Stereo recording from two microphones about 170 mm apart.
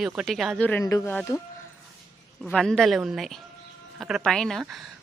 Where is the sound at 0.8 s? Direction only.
20° left (ahead or behind).